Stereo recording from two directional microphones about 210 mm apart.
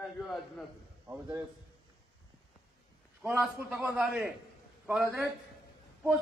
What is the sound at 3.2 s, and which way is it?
A man's voice, 5° right (ahead or behind).